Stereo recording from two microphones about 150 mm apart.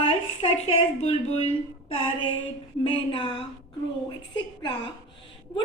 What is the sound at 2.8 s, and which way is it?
A woman's voice, 35° left (ahead or behind).